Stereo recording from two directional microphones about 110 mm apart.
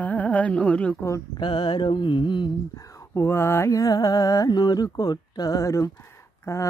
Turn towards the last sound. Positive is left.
turn(degrees=25)  # may be behind; listen again after turning